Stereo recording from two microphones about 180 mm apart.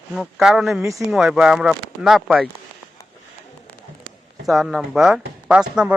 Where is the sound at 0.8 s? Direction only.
15° right (ahead or behind).